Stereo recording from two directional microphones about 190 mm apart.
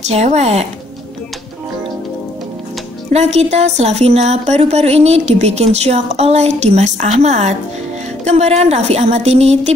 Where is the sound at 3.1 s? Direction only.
35° right (ahead or behind).